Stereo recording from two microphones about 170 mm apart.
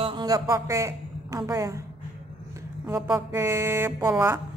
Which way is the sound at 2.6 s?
15° right (ahead or behind).